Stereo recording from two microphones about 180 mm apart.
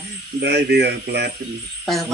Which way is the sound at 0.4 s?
70° right (ahead or behind).